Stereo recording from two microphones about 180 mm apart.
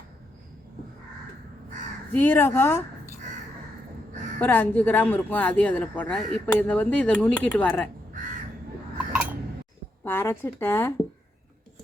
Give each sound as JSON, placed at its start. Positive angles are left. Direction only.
{"t": 2.1, "sound": "speech", "side_deg": 10}
{"t": 4.4, "sound": "speech", "side_deg": 10}
{"t": 10.0, "sound": "speech", "side_deg": 10}